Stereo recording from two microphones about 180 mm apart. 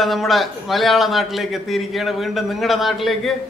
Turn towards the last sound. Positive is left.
turn(degrees=0)  # may be behind; listen again after turning